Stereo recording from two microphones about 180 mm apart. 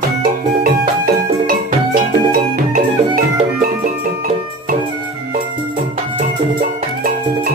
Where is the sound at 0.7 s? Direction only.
55° right (ahead or behind).